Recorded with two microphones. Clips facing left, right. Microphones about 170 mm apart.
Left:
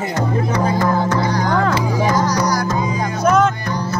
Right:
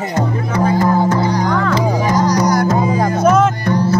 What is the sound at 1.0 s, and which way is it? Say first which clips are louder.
Music: right 2 dB; 25° right (ahead or behind).